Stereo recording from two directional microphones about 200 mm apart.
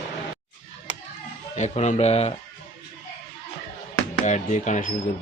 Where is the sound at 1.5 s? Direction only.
35° left (ahead or behind).